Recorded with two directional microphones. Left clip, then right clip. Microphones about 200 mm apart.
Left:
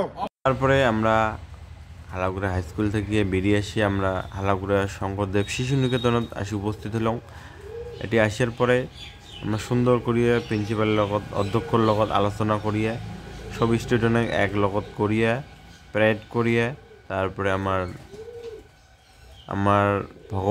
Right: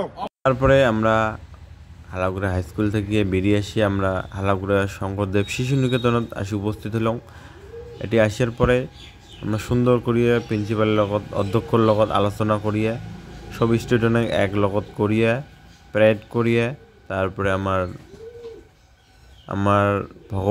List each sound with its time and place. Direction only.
0.4 s speech: 15° right (ahead or behind)
19.4 s speech: 10° right (ahead or behind)